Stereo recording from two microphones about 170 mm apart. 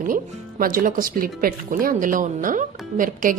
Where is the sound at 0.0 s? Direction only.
55° right (ahead or behind).